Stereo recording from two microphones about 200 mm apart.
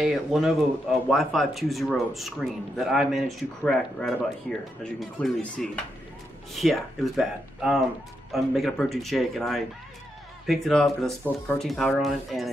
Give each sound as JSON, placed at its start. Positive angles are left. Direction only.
{"t": 0.0, "sound": "speech", "side_deg": 0}